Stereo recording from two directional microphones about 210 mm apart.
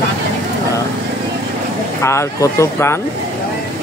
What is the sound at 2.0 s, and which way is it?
Speech, 15° left (ahead or behind).